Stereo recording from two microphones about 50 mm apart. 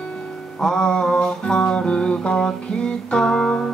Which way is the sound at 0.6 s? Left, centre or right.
Centre.